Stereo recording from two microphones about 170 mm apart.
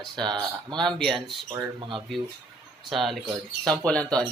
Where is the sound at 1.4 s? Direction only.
25° right (ahead or behind).